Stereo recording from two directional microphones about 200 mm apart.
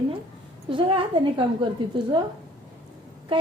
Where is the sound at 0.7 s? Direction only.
25° right (ahead or behind).